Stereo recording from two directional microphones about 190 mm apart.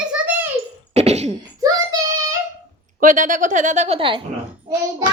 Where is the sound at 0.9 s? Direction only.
35° right (ahead or behind).